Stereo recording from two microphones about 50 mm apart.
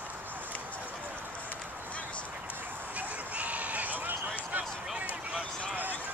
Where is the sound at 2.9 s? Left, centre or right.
Right.